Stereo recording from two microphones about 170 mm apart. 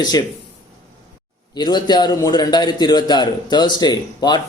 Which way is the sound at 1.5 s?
25° left (ahead or behind).